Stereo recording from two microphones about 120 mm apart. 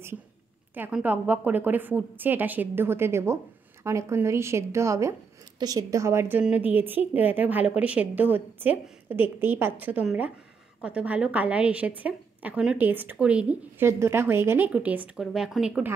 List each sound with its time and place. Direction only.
0.9 s a woman's voice: 15° right (ahead or behind)
13.8 s a woman's voice: 20° right (ahead or behind)